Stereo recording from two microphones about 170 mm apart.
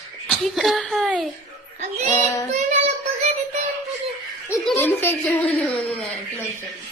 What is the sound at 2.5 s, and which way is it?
Child singing, 45° right (ahead or behind).